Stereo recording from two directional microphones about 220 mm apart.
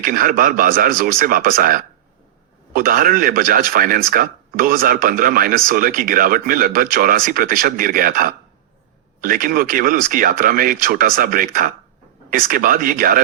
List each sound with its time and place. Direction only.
0.0 s speech: 40° right (ahead or behind)